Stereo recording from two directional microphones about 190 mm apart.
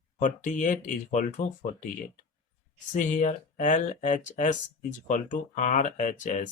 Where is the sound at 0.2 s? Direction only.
40° left (ahead or behind).